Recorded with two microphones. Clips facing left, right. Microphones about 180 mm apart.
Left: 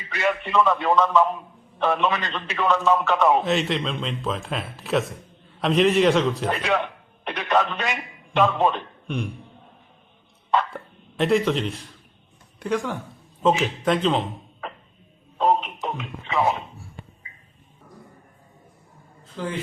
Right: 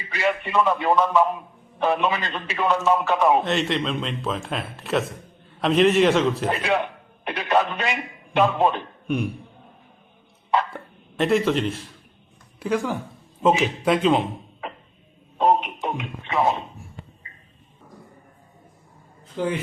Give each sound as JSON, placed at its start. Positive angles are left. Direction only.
{"t": 0.1, "sound": "a man's voice", "side_deg": -15}
{"t": 11.2, "sound": "a man's voice", "side_deg": 0}
{"t": 15.4, "sound": "music", "side_deg": -5}
{"t": 19.4, "sound": "a man's voice", "side_deg": -15}